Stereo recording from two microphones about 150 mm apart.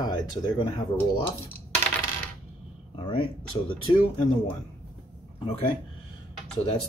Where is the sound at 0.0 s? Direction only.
30° left (ahead or behind).